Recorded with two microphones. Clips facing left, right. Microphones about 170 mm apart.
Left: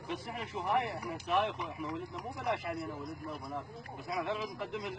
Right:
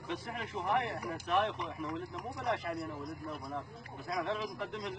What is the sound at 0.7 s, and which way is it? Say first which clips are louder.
Speech: left 2 dB; centre (ahead or behind).